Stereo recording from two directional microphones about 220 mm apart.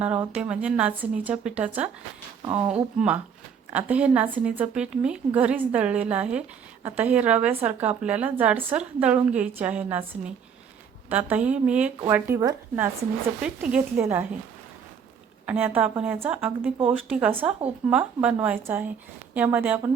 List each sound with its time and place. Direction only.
0.0 s speech: 5° right (ahead or behind)
2.4 s speech: 25° right (ahead or behind)
3.7 s a woman's voice: 5° right (ahead or behind)
15.4 s a woman's voice: 10° right (ahead or behind)